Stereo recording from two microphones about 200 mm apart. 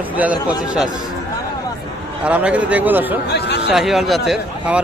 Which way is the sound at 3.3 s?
55° left (ahead or behind).